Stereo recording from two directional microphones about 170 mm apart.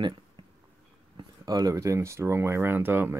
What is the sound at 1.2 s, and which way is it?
Speech, 25° right (ahead or behind).